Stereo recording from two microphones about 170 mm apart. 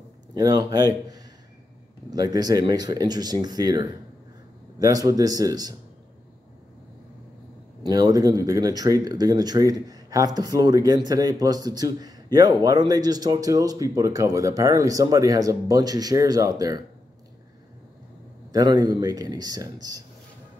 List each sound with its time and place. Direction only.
0.3 s speech: 25° right (ahead or behind)
7.8 s speech: 20° right (ahead or behind)
18.5 s speech: 20° right (ahead or behind)